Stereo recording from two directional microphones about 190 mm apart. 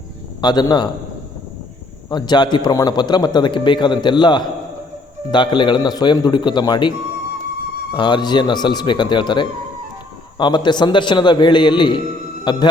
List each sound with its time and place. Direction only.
0.4 s a man's voice: 20° left (ahead or behind)
2.0 s a man's voice: 20° left (ahead or behind)
7.9 s a man's voice: 25° left (ahead or behind)